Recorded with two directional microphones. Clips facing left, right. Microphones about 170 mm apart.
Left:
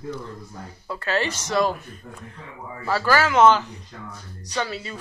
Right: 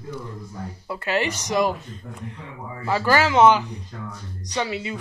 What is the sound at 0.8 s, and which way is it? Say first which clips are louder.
Speech: right 1 dB; 15° right (ahead or behind).